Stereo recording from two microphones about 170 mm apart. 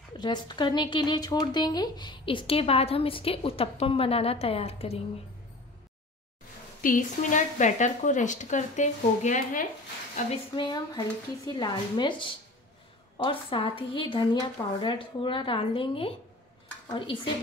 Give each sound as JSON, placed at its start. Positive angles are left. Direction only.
{"t": 0.1, "sound": "a woman's voice", "side_deg": 25}
{"t": 6.8, "sound": "a woman's voice", "side_deg": 50}
{"t": 10.5, "sound": "a woman's voice", "side_deg": 30}